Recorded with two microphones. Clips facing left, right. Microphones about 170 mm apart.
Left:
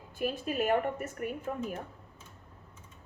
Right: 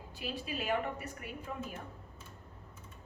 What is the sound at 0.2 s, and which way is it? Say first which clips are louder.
A woman's voice: left 8 dB; 50° left (ahead or behind).